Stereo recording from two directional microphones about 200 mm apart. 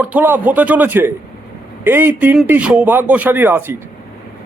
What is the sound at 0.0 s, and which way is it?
Speech, 10° right (ahead or behind).